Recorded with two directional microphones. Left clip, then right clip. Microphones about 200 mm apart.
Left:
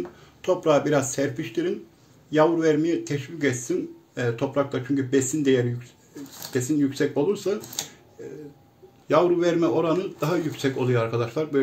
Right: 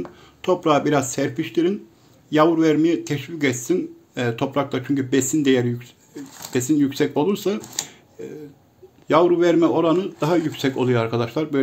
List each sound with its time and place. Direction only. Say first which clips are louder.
0.4 s speech: right 2 dB; 50° right (ahead or behind)